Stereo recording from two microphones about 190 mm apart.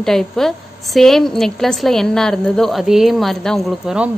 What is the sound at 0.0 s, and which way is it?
A woman's voice, centre (ahead or behind).